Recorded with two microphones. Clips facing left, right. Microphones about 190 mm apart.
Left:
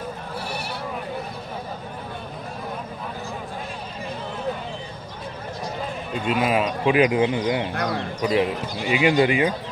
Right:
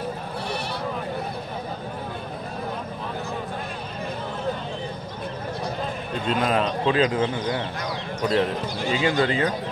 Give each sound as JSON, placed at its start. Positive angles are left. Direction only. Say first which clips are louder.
{"t": 6.2, "sound": "speech", "louder": "left 1 dB", "side_deg": 5}
{"t": 7.7, "sound": "a man's voice", "louder": "left 5 dB", "side_deg": 60}
{"t": 8.2, "sound": "speech", "louder": "even", "side_deg": 10}